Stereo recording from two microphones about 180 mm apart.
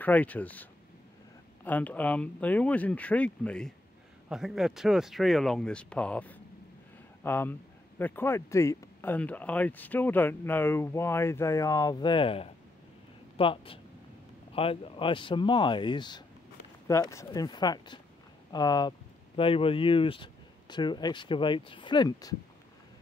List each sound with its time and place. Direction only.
0.0 s speech: 10° left (ahead or behind); by 22.3 s 25° left (ahead or behind)